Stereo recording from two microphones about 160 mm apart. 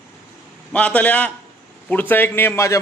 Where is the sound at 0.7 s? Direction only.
10° left (ahead or behind).